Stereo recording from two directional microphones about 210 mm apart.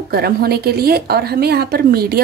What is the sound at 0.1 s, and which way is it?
A woman's voice, 50° right (ahead or behind).